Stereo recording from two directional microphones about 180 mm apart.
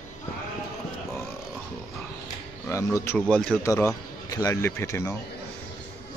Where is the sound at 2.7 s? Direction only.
15° left (ahead or behind).